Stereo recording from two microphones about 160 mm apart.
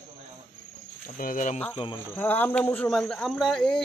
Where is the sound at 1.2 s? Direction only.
55° left (ahead or behind).